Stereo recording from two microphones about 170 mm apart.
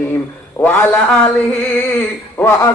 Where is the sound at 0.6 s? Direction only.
10° left (ahead or behind).